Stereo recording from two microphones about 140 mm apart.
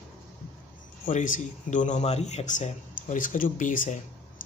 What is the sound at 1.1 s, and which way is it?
Speech, 65° left (ahead or behind).